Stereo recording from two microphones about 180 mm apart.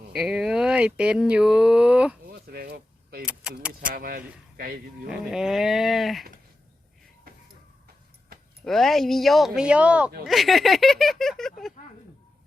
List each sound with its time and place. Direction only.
0.1 s speech: 5° right (ahead or behind)
2.2 s a sound: 60° right (ahead or behind)
3.8 s speech: 55° right (ahead or behind)
5.0 s speech: 5° right (ahead or behind)
8.6 s speech: centre (ahead or behind)